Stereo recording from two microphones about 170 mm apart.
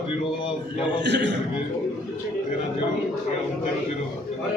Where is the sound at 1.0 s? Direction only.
90° right.